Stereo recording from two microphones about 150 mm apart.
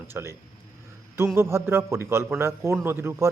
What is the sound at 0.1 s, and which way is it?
Speech, 20° right (ahead or behind).